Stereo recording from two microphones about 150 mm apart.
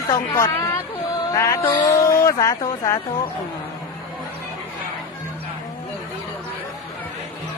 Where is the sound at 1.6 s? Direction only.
30° left (ahead or behind).